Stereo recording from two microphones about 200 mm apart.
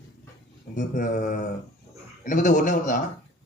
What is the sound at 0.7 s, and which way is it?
Speech, 40° left (ahead or behind).